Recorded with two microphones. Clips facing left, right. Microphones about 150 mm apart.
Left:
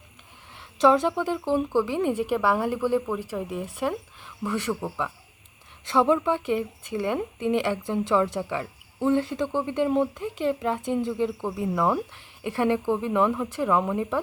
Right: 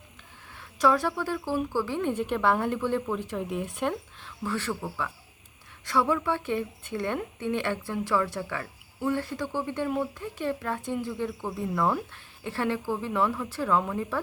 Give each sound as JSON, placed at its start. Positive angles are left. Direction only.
{"t": 0.5, "sound": "a woman's voice", "side_deg": 20}
{"t": 4.2, "sound": "a woman's voice", "side_deg": 15}